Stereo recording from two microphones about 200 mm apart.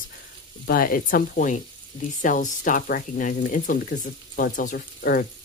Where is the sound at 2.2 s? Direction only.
40° left (ahead or behind).